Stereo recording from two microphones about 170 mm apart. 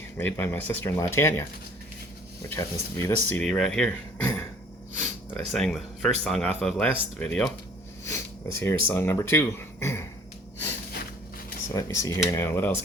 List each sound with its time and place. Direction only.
0.2 s speech: 10° left (ahead or behind)
2.5 s speech: 15° left (ahead or behind)
5.3 s speech: 5° left (ahead or behind)
11.7 s speech: 20° left (ahead or behind)